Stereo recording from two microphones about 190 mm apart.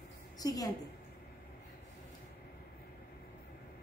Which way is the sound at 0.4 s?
20° left (ahead or behind).